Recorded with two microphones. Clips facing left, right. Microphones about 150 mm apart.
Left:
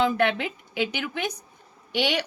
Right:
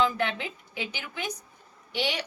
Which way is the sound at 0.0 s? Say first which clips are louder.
Left 4 dB; 65° left (ahead or behind).